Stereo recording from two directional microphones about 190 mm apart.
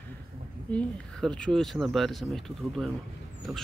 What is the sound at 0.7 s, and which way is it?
Speech, 5° left (ahead or behind).